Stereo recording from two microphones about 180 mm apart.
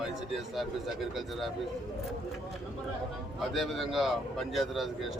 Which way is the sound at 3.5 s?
Centre (ahead or behind).